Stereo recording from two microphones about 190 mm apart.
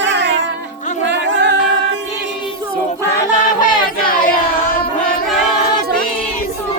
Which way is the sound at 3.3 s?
45° left (ahead or behind).